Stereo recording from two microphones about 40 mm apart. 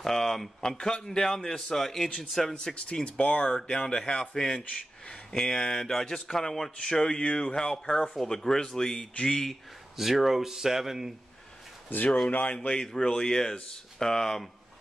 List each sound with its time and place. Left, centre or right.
0.0 s speech: centre
2.5 s speech: left
4.6 s speech: left; by 6.7 s centre
6.8 s speech: centre
9.9 s speech: centre
12.3 s speech: left
12.7 s speech: centre